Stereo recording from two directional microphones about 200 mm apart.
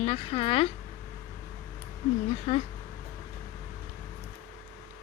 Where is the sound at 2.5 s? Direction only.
30° left (ahead or behind).